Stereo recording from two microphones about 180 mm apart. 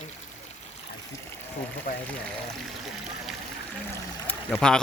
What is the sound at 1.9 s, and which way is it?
Speech, 55° left (ahead or behind).